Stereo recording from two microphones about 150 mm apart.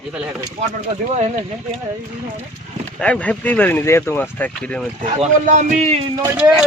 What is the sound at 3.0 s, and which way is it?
Speech, 10° left (ahead or behind).